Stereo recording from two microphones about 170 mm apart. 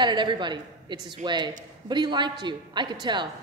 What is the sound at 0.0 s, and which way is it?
A woman's voice, 25° right (ahead or behind).